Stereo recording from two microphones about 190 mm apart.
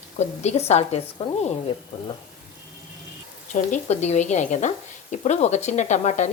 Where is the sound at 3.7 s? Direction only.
35° left (ahead or behind).